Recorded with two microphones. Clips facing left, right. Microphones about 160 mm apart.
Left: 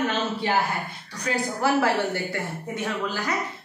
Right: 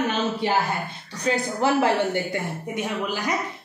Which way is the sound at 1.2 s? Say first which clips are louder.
Right 2 dB; 20° right (ahead or behind).